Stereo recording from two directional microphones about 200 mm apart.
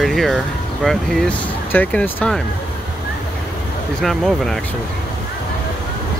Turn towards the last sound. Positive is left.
turn(degrees=0)  # may be behind; listen again after turning